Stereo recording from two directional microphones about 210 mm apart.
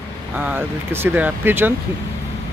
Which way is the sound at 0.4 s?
10° right (ahead or behind).